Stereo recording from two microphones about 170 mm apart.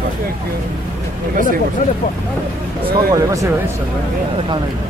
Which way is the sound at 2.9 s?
20° right (ahead or behind).